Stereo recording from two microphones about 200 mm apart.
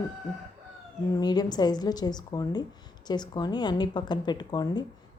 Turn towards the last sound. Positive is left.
turn(degrees=20)  # may be behind; listen again after turning